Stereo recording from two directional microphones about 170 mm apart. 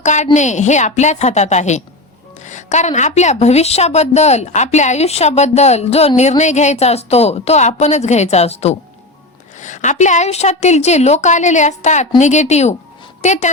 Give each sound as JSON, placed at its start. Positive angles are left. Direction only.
{"t": 0.0, "sound": "a woman's voice", "side_deg": 45}